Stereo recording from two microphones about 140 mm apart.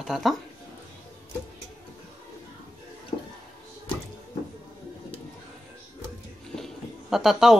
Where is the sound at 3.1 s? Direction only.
30° left (ahead or behind).